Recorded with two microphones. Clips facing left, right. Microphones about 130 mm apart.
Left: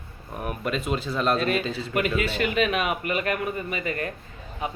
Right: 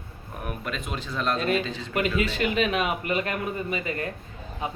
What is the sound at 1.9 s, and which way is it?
A man's voice, 30° right (ahead or behind).